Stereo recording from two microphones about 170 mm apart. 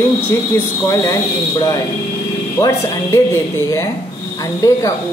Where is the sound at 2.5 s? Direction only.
20° left (ahead or behind).